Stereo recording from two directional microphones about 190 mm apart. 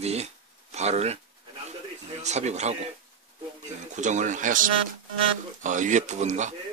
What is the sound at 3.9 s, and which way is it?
Speech, 40° right (ahead or behind).